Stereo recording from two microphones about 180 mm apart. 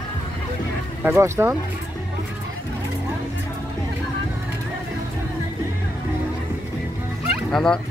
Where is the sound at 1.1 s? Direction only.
15° right (ahead or behind).